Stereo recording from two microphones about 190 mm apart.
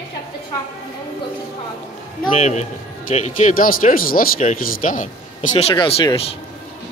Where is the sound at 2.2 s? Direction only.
35° left (ahead or behind).